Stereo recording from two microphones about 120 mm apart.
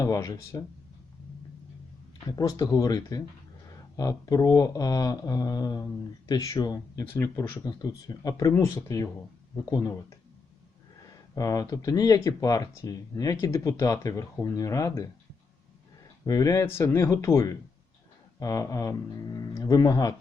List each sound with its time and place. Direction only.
0.0 s speech: 25° left (ahead or behind)
2.2 s speech: 30° left (ahead or behind)
11.3 s speech: 30° left (ahead or behind)
16.2 s speech: 30° left (ahead or behind)